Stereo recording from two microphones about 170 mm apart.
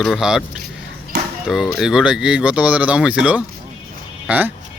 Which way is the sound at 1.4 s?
Centre (ahead or behind).